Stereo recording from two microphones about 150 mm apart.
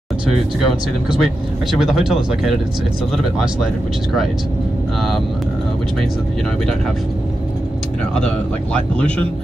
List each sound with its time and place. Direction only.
1.2 s speech: centre (ahead or behind)
8.7 s speech: 5° left (ahead or behind)